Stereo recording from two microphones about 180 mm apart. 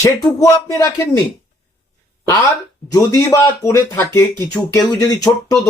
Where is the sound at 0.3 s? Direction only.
15° left (ahead or behind).